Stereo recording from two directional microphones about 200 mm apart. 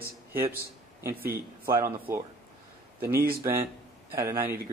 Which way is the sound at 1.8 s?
15° right (ahead or behind).